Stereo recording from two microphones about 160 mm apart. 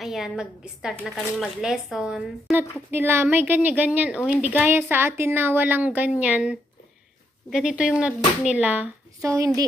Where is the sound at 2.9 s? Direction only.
15° right (ahead or behind).